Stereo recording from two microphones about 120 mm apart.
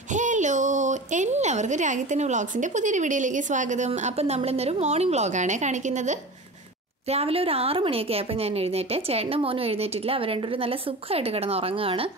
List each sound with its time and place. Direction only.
0.1 s speech: 90° right
7.1 s a woman's voice: 55° right (ahead or behind)